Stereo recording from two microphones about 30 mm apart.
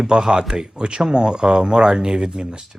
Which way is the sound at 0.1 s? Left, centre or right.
Right.